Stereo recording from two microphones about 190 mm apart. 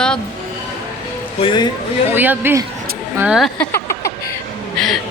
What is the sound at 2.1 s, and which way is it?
Speech, 10° right (ahead or behind).